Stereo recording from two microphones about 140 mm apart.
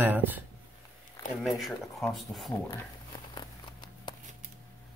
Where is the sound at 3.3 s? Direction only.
30° left (ahead or behind).